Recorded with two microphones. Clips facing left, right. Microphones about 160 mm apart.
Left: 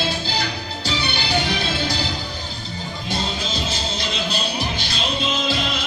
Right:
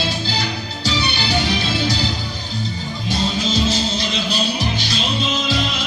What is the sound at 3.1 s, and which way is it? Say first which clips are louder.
Music: right 6 dB; 55° left (ahead or behind).